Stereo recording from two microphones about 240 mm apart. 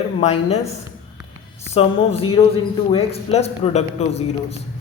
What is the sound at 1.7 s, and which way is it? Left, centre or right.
A man's voice, left.